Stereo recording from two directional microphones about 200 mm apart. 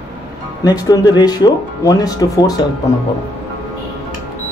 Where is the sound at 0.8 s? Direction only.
20° left (ahead or behind).